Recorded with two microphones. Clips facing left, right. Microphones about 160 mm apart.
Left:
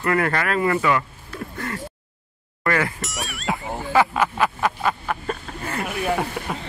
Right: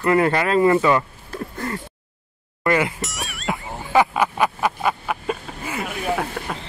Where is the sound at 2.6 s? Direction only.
20° right (ahead or behind).